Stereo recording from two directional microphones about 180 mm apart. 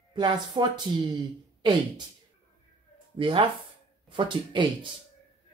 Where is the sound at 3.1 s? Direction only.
30° right (ahead or behind).